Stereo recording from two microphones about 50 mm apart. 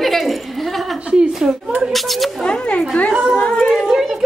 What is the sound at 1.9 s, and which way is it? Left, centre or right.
Speech, centre.